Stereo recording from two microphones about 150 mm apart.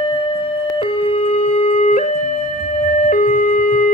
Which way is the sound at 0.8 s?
45° left (ahead or behind).